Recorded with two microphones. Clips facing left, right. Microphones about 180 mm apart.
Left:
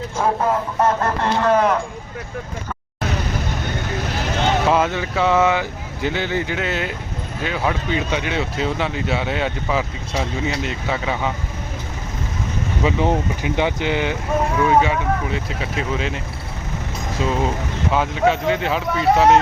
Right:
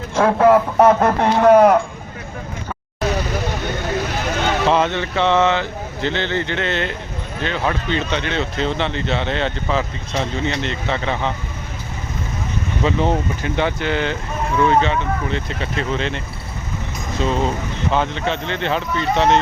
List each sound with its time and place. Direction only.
0.2 s speech: 85° right; by 1.7 s 55° right (ahead or behind)
4.6 s speech: 5° left (ahead or behind)
12.8 s speech: 10° left (ahead or behind)